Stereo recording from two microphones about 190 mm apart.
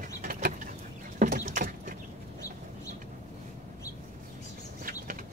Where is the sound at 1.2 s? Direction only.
45° right (ahead or behind).